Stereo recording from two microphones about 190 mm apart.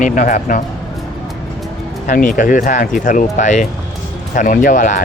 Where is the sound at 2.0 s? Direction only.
45° left (ahead or behind).